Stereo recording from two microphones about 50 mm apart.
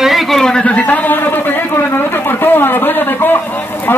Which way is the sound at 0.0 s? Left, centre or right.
Centre.